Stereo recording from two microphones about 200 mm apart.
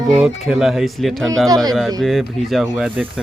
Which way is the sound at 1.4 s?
20° right (ahead or behind).